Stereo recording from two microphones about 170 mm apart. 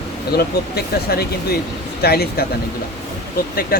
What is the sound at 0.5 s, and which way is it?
Speech, 65° left (ahead or behind).